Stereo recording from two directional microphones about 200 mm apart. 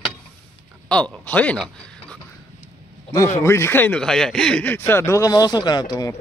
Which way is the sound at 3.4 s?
15° left (ahead or behind).